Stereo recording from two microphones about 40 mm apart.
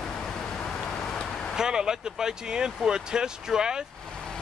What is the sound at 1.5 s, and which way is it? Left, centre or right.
Speech, centre.